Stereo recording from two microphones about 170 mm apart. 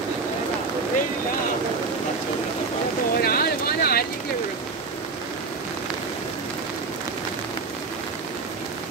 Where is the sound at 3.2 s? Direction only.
65° left (ahead or behind).